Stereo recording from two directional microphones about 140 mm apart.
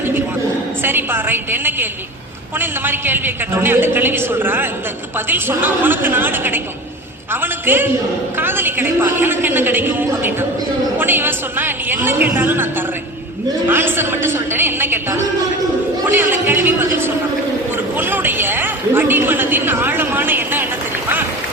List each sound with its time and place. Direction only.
0.8 s a woman's voice: 15° right (ahead or behind)
13.7 s a woman's voice: 15° right (ahead or behind)
16.0 s a woman's voice: 15° right (ahead or behind)